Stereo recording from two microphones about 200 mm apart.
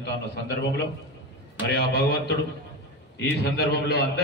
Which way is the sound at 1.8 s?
55° left (ahead or behind).